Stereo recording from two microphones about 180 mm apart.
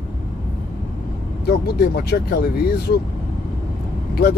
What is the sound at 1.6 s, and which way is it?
Speech, 65° left (ahead or behind).